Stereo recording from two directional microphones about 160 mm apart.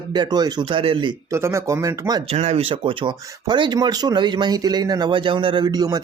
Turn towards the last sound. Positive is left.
turn(degrees=-25)  # may be behind; listen again after turning